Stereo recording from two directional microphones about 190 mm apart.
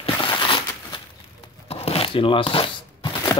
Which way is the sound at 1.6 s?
30° left (ahead or behind).